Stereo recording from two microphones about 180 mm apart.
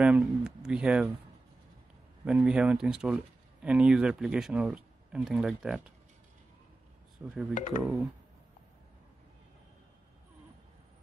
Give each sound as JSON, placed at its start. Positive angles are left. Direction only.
{"t": 0.0, "sound": "speech", "side_deg": -5}
{"t": 2.2, "sound": "speech", "side_deg": -5}
{"t": 7.2, "sound": "speech", "side_deg": -5}
{"t": 7.5, "sound": "speech", "side_deg": 45}